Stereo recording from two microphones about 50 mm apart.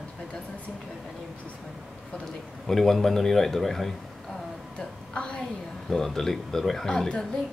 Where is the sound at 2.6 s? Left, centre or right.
Centre.